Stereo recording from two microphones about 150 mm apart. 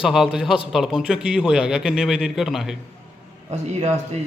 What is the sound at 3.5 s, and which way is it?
Speech, 50° right (ahead or behind).